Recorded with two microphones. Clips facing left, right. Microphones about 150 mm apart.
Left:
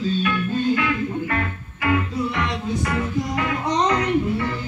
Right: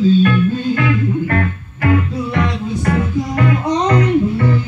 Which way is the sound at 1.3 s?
55° right (ahead or behind).